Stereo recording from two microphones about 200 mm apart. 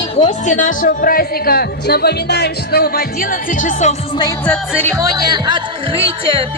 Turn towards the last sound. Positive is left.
turn(degrees=-20)  # may be behind; listen again after turning